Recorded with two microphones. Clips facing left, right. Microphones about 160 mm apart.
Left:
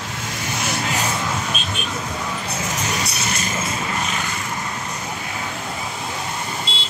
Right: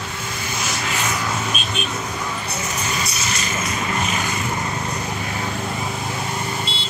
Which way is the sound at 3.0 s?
65° left (ahead or behind).